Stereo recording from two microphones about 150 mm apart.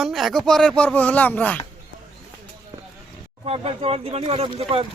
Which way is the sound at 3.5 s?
40° right (ahead or behind).